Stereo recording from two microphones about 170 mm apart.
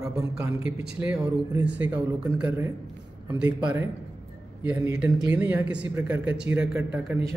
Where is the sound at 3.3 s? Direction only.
25° right (ahead or behind).